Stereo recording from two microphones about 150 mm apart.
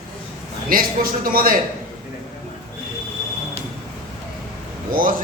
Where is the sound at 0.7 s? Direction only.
75° right (ahead or behind).